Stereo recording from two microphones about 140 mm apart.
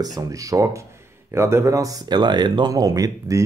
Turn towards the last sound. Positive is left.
turn(degrees=-20)  # may be behind; listen again after turning